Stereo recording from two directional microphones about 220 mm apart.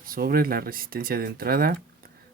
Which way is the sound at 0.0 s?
40° right (ahead or behind).